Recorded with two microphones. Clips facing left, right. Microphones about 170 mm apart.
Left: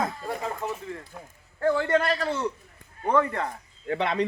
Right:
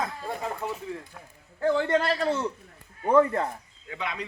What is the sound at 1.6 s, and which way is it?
A man's voice, 20° right (ahead or behind).